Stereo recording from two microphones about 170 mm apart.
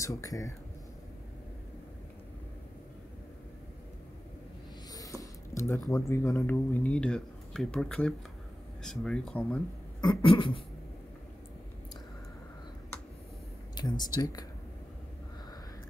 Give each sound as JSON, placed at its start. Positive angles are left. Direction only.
{"t": 0.0, "sound": "speech", "side_deg": 20}
{"t": 4.9, "sound": "speech", "side_deg": 20}
{"t": 10.0, "sound": "beatboxing", "side_deg": 30}
{"t": 14.1, "sound": "speech", "side_deg": 20}